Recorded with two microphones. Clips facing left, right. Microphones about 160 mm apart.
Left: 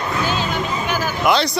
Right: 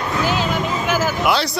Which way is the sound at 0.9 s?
90° right.